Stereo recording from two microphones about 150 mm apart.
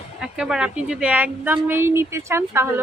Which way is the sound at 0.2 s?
5° right (ahead or behind).